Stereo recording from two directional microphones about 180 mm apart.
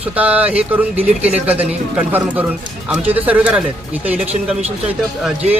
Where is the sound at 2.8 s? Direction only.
10° right (ahead or behind).